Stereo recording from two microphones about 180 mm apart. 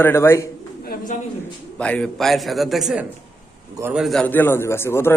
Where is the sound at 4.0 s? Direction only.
5° left (ahead or behind).